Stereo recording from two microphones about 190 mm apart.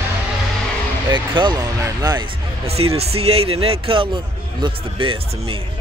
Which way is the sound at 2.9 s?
30° right (ahead or behind).